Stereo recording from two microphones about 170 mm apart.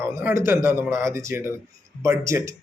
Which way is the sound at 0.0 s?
10° right (ahead or behind).